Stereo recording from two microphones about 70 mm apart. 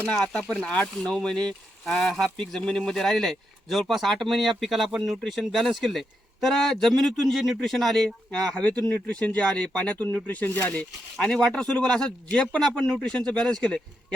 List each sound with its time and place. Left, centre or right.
0.1 s speech: centre
11.2 s speech: centre